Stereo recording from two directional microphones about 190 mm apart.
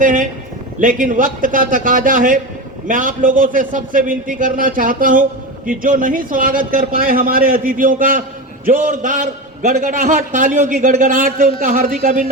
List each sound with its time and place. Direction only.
0.0 s a man's voice: 45° right (ahead or behind)